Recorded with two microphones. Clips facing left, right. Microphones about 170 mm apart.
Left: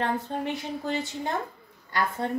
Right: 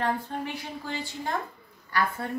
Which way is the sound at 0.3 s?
25° left (ahead or behind).